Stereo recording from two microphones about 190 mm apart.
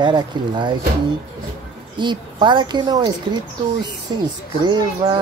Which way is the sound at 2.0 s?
25° right (ahead or behind).